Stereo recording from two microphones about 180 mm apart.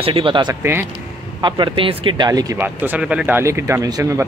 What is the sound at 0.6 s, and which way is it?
Speech, 15° right (ahead or behind).